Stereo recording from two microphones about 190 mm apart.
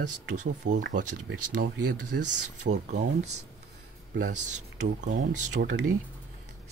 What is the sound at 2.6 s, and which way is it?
Speech, 40° right (ahead or behind).